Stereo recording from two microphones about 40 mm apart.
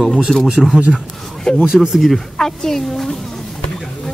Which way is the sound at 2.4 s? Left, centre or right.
Centre.